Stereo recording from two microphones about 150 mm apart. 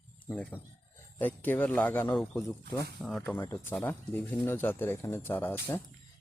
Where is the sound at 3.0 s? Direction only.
Centre (ahead or behind).